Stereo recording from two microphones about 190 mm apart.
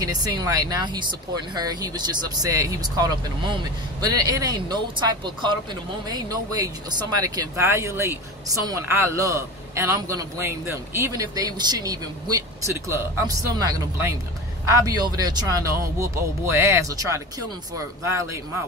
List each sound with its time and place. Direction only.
0.0 s speech: 20° right (ahead or behind)